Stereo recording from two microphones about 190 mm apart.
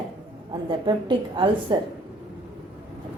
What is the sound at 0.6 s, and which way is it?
A woman's voice, 25° right (ahead or behind).